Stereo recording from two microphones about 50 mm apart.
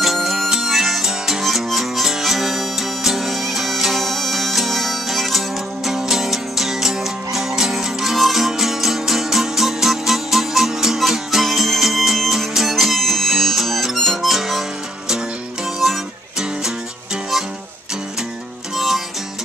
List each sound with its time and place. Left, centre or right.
0.0 s music: centre
15.8 s music: centre